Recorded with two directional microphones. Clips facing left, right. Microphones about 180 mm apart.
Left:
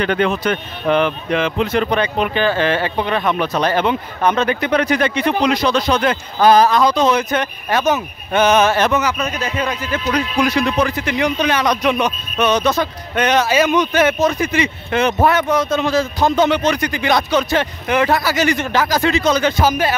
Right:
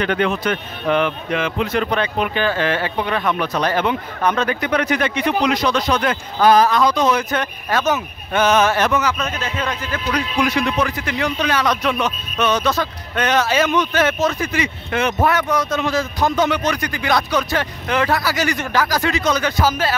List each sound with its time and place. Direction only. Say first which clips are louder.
0.0 s a man's voice: left 2 dB; 35° left (ahead or behind)
9.0 s a man's voice: left 2 dB; 10° left (ahead or behind)
10.1 s speech: left 2 dB; 35° left (ahead or behind)
11.1 s a man's voice: left 3 dB; 20° left (ahead or behind)